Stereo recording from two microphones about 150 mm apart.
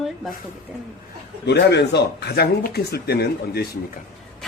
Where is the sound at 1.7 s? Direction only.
90° left.